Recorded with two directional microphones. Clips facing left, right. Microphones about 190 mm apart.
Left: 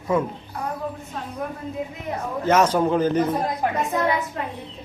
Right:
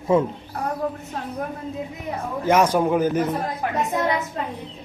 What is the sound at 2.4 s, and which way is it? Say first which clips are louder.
Speech: even; 10° right (ahead or behind).